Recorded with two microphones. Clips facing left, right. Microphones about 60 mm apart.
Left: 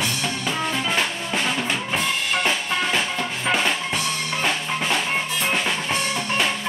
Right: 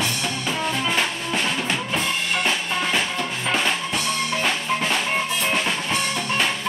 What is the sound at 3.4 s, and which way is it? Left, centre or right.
Drum kit, centre.